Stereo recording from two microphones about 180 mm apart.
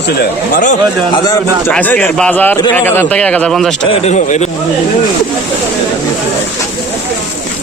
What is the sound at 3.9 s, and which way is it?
Speech, 40° left (ahead or behind).